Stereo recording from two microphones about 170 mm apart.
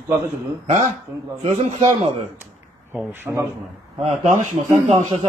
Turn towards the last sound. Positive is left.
turn(degrees=-45)  # may be behind; listen again after turning